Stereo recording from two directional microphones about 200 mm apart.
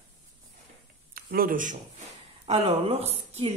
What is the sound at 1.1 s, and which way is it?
Speech, 45° right (ahead or behind).